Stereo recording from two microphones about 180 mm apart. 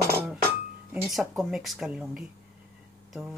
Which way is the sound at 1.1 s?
Centre (ahead or behind).